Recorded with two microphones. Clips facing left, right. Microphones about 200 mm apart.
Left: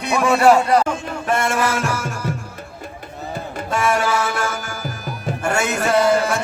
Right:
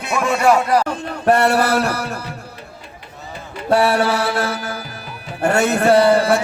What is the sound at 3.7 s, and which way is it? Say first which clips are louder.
A man's voice: right 4 dB; 35° right (ahead or behind).